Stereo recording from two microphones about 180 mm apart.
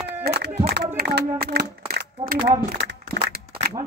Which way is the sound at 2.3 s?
20° right (ahead or behind).